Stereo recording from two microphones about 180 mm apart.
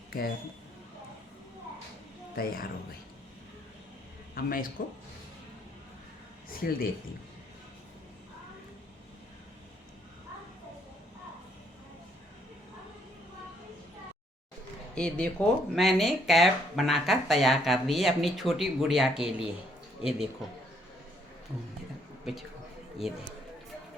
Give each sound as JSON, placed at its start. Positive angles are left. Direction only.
{"t": 0.1, "sound": "speech", "side_deg": 55}
{"t": 2.3, "sound": "speech", "side_deg": 55}
{"t": 4.4, "sound": "speech", "side_deg": 55}
{"t": 6.5, "sound": "speech", "side_deg": 50}
{"t": 14.9, "sound": "speech", "side_deg": 5}
{"t": 23.0, "sound": "speech", "side_deg": 0}